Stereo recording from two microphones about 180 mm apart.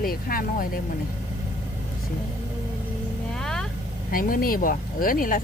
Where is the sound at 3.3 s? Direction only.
5° left (ahead or behind).